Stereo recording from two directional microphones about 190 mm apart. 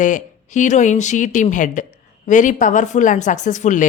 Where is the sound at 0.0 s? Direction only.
40° left (ahead or behind).